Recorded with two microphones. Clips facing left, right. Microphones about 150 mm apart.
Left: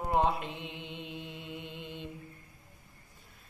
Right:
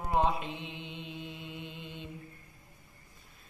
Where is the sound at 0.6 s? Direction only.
55° left (ahead or behind).